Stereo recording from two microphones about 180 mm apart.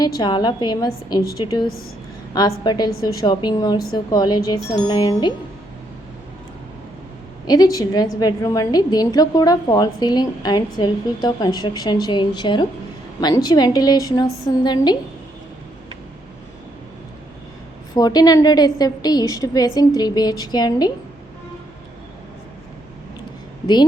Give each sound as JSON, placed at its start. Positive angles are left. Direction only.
{"t": 0.2, "sound": "a woman's voice", "side_deg": 25}
{"t": 2.6, "sound": "a woman's voice", "side_deg": 25}
{"t": 7.4, "sound": "a woman's voice", "side_deg": 20}
{"t": 17.9, "sound": "a woman's voice", "side_deg": 20}